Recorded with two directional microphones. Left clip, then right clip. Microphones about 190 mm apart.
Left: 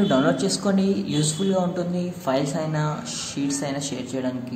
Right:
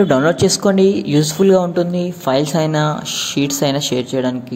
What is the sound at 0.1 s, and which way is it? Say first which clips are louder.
Speech: right 8 dB; 40° right (ahead or behind).